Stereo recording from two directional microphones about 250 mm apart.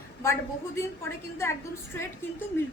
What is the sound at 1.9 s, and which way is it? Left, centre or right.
Speech, centre.